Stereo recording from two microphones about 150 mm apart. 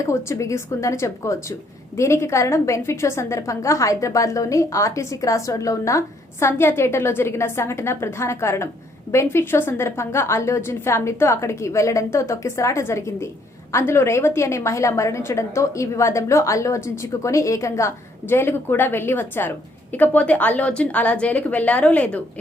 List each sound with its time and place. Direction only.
0.0 s a woman's voice: 20° left (ahead or behind)